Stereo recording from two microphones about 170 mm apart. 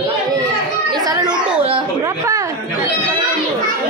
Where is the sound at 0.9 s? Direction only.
25° right (ahead or behind).